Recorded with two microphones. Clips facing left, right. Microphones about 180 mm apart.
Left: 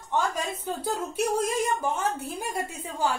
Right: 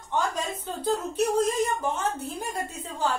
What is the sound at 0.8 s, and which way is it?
A woman's voice, 10° left (ahead or behind).